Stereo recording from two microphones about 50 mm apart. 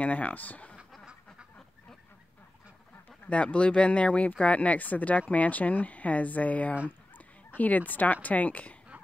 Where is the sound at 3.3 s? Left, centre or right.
Left.